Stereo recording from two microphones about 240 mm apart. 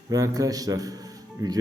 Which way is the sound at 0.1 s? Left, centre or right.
Centre.